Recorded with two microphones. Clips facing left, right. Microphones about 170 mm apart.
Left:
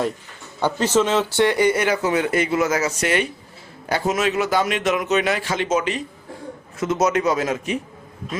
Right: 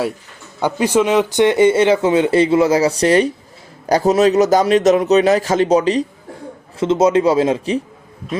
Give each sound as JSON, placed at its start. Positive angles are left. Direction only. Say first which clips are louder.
{"t": 0.6, "sound": "a man's voice", "louder": "right 3 dB", "side_deg": -10}